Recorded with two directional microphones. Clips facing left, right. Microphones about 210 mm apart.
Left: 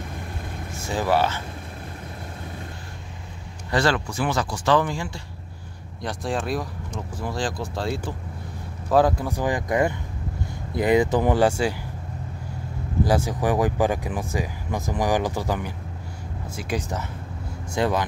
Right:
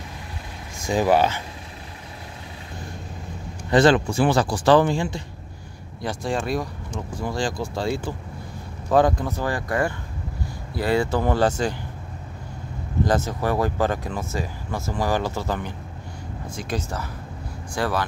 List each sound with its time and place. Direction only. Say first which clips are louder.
0.7 s speech: right 3 dB; 15° right (ahead or behind)
3.7 s speech: right 6 dB; 20° right (ahead or behind)
6.0 s speech: right 1 dB; centre (ahead or behind)
13.0 s speech: left 1 dB; 10° left (ahead or behind)